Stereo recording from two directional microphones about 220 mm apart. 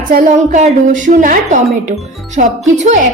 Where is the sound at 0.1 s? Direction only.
35° right (ahead or behind).